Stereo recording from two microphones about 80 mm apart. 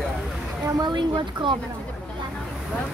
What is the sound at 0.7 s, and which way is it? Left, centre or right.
Speech, right.